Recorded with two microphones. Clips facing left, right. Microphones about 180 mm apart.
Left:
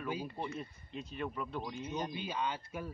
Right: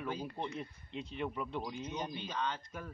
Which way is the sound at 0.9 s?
15° right (ahead or behind).